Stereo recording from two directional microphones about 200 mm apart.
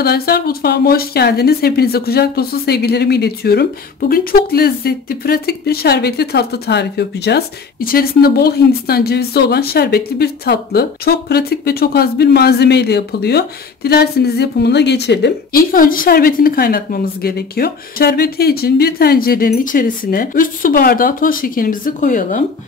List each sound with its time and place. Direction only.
0.0 s speech: 50° left (ahead or behind)